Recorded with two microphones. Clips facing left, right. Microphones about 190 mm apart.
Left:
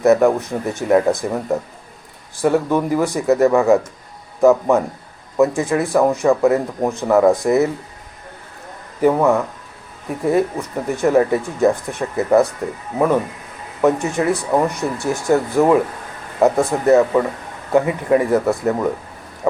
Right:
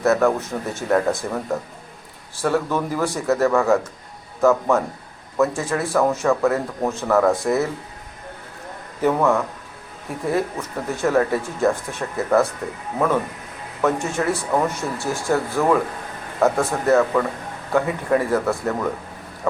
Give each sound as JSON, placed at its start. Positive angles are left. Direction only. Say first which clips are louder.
{"t": 0.0, "sound": "speech", "louder": "left 5 dB", "side_deg": 15}
{"t": 9.0, "sound": "speech", "louder": "left 4 dB", "side_deg": 15}
{"t": 13.8, "sound": "speech", "louder": "left 4 dB", "side_deg": 15}